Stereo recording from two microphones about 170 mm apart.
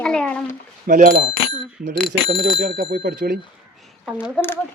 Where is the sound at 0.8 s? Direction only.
55° right (ahead or behind).